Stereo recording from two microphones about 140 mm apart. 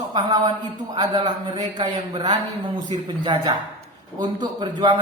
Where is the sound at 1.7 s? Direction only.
35° right (ahead or behind).